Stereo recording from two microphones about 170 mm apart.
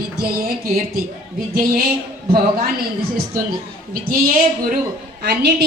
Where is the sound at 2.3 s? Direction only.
65° right (ahead or behind).